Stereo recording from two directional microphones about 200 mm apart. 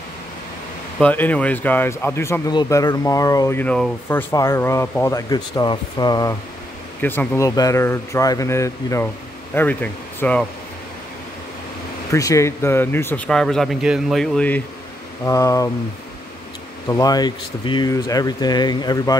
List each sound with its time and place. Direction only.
0.9 s speech: 10° left (ahead or behind)
7.0 s speech: 10° left (ahead or behind)
12.1 s speech: 15° left (ahead or behind)
16.8 s speech: 20° left (ahead or behind)